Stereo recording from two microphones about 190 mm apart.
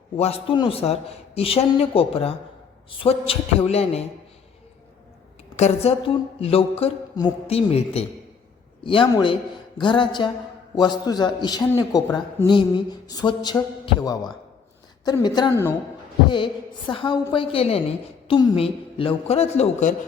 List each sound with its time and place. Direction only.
0.2 s a man's voice: 30° left (ahead or behind)
5.5 s a man's voice: 35° left (ahead or behind)